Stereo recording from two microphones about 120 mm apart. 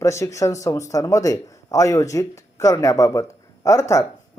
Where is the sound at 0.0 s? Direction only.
25° left (ahead or behind).